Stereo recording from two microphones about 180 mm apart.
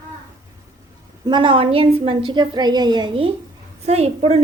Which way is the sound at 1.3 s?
25° right (ahead or behind).